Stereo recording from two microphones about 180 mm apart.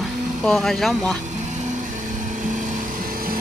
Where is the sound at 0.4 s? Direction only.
Centre (ahead or behind).